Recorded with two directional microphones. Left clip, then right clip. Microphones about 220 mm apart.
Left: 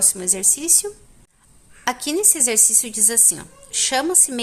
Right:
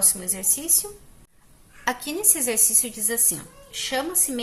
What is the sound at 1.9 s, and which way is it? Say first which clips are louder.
A woman's voice: left 5 dB; 30° left (ahead or behind).